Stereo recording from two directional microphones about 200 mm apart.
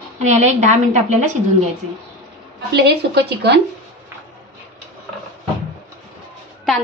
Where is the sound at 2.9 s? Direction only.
55° right (ahead or behind).